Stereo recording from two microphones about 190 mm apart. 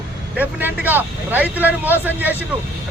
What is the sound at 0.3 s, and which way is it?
Speech, 10° right (ahead or behind).